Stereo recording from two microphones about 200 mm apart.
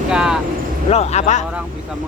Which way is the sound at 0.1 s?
5° right (ahead or behind).